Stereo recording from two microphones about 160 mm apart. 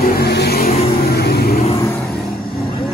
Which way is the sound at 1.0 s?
75° left (ahead or behind).